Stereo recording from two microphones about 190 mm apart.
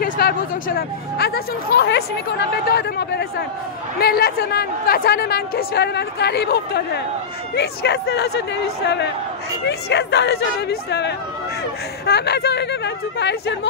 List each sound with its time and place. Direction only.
0.0 s speech: 55° left (ahead or behind)